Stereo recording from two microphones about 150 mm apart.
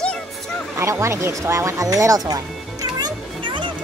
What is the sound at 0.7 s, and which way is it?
Music, 20° right (ahead or behind).